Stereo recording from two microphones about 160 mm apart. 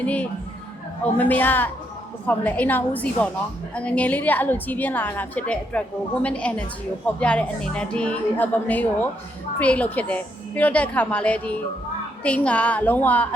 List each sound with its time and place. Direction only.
0.0 s a woman's voice: 10° left (ahead or behind)